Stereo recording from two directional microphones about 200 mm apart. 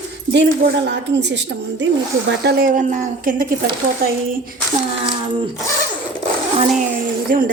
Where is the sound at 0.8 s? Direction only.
60° right (ahead or behind); by 3.7 s 45° right (ahead or behind).